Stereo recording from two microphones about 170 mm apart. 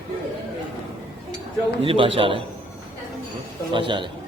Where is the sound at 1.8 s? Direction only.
30° right (ahead or behind).